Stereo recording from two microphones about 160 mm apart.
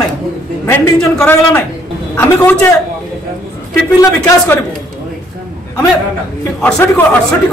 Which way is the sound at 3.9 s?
20° left (ahead or behind).